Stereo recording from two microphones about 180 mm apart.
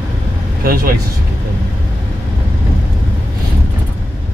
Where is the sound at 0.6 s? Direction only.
55° right (ahead or behind).